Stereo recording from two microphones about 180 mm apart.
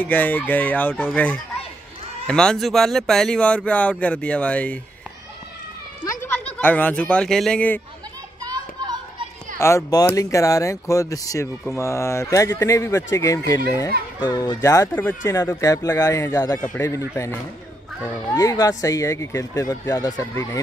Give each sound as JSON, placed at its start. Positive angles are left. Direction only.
{"t": 0.0, "sound": "speech", "side_deg": 10}
{"t": 6.0, "sound": "speech", "side_deg": 10}
{"t": 9.6, "sound": "speech", "side_deg": 15}